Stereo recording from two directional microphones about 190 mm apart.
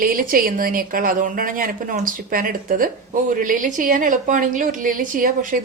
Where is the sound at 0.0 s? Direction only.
45° right (ahead or behind).